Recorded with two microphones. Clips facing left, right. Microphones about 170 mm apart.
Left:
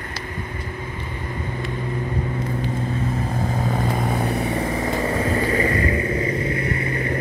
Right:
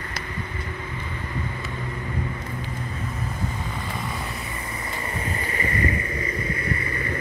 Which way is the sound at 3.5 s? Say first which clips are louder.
Left 9 dB; 45° left (ahead or behind).